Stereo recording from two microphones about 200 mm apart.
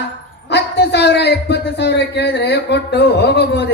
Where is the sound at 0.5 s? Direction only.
60° left (ahead or behind).